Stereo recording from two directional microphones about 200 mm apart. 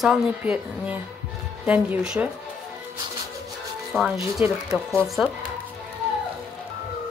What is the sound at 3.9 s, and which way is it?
Speech, 5° right (ahead or behind).